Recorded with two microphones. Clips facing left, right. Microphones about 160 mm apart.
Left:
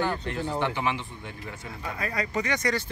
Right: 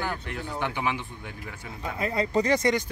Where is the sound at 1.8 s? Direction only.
20° right (ahead or behind).